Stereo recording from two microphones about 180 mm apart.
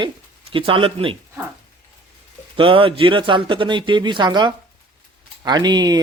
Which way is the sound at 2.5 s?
30° right (ahead or behind).